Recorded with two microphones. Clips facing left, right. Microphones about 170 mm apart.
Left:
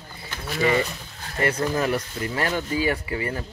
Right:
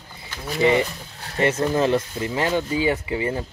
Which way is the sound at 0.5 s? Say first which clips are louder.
Right 3 dB; 20° right (ahead or behind).